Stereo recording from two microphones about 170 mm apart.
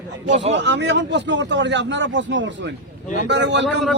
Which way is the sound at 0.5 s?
90° right.